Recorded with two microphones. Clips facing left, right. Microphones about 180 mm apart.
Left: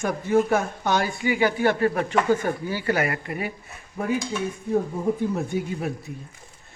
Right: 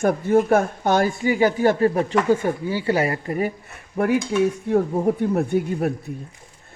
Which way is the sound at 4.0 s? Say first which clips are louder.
Right 7 dB; 70° right (ahead or behind).